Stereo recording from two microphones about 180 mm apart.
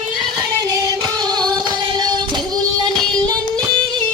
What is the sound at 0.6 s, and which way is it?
Music, 20° right (ahead or behind).